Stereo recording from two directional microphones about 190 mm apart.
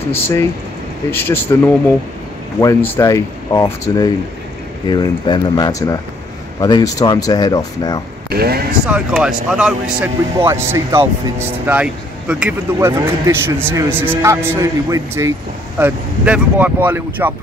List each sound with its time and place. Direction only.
0.1 s speech: 15° left (ahead or behind)
8.3 s speech: 55° right (ahead or behind)
8.8 s speech: 5° right (ahead or behind)